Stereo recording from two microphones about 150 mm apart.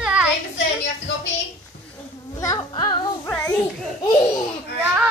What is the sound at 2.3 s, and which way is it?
Music, 25° left (ahead or behind).